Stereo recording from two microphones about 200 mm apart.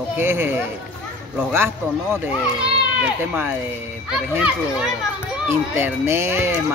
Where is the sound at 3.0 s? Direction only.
10° right (ahead or behind).